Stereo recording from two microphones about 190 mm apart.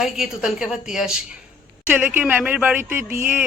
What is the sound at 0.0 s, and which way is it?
A woman's voice, 5° right (ahead or behind).